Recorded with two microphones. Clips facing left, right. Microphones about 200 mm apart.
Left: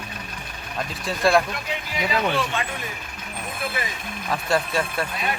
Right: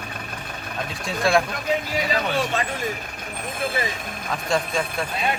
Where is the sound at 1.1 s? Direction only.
Centre (ahead or behind).